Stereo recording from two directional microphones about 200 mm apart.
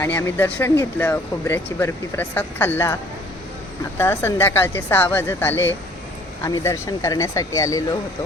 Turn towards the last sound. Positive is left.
turn(degrees=15)  # may be behind; listen again after turning